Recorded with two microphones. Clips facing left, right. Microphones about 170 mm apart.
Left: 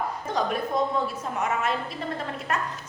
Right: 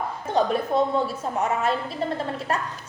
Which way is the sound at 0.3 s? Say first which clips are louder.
Right 5 dB; 30° right (ahead or behind).